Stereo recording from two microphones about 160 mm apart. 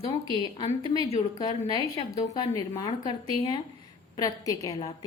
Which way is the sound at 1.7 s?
35° left (ahead or behind).